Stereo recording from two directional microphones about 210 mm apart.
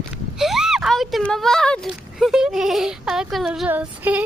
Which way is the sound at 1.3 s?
Centre (ahead or behind).